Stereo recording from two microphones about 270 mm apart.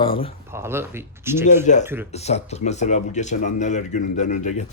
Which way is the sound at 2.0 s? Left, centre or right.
Left.